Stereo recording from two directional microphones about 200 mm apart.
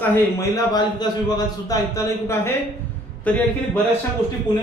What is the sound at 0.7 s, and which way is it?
A man's voice, 20° left (ahead or behind).